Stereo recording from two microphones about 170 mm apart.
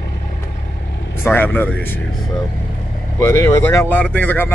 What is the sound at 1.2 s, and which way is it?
Speech, 10° left (ahead or behind).